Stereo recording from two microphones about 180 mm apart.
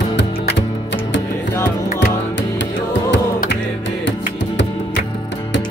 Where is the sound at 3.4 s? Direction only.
80° left.